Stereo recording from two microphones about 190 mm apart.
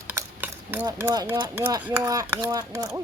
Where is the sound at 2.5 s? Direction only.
20° right (ahead or behind).